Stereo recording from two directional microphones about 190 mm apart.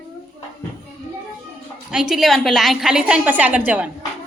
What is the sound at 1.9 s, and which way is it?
A woman's voice, 5° right (ahead or behind).